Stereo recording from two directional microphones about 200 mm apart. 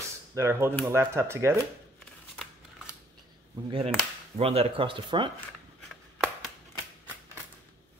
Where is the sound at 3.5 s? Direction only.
25° right (ahead or behind).